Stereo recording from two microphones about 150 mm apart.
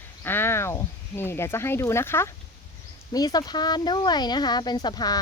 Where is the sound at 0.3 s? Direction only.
15° left (ahead or behind).